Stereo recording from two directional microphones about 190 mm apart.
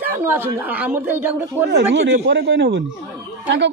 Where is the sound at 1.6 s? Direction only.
70° right (ahead or behind).